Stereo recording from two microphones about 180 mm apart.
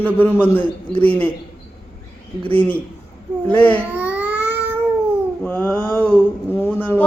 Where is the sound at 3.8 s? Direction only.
10° right (ahead or behind).